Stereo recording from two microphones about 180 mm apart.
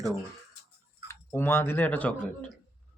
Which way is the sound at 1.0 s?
15° left (ahead or behind).